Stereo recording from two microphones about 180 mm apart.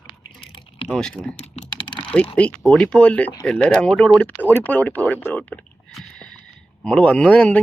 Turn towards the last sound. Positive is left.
turn(degrees=5)  # may be behind; listen again after turning